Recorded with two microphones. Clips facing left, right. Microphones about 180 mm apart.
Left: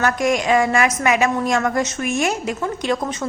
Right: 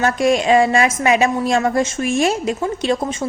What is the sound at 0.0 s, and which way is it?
A woman's voice, 25° right (ahead or behind).